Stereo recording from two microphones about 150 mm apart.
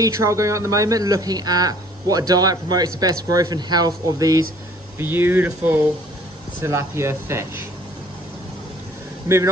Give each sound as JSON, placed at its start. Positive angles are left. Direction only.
{"t": 0.0, "sound": "speech", "side_deg": -20}
{"t": 4.9, "sound": "speech", "side_deg": -15}